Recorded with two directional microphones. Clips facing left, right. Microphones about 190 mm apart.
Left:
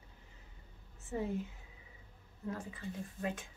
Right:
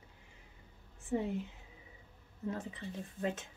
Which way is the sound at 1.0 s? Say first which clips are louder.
Right 3 dB; 20° right (ahead or behind).